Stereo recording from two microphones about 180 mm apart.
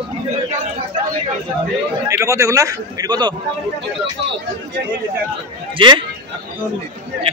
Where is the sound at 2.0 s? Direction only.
15° right (ahead or behind).